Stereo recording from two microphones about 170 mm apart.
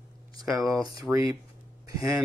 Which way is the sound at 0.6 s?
20° right (ahead or behind).